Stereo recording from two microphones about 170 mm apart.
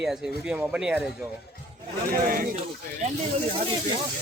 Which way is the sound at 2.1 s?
55° right (ahead or behind).